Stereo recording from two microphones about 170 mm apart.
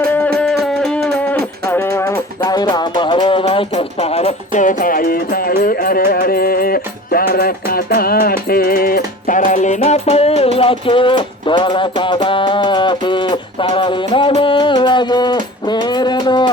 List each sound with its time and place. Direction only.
0.1 s music: 5° left (ahead or behind); by 16.5 s 25° left (ahead or behind)